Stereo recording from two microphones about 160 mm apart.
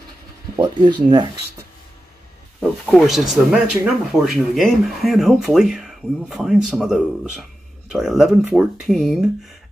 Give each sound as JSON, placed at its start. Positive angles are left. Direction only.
{"t": 0.6, "sound": "speech", "side_deg": -30}
{"t": 2.6, "sound": "speech", "side_deg": 0}